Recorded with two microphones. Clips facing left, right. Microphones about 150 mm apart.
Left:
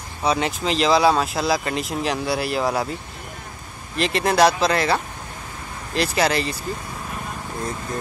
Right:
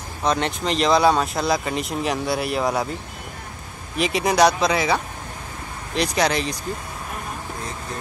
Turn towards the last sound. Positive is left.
turn(degrees=5)  # may be behind; listen again after turning